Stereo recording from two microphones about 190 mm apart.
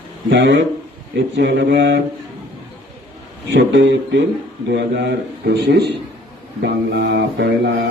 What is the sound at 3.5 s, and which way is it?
A man's voice, 75° right (ahead or behind).